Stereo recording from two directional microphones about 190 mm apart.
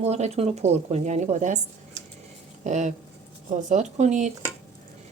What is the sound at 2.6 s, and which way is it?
Speech, 40° right (ahead or behind).